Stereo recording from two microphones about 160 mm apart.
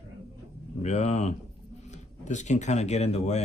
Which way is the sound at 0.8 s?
45° left (ahead or behind).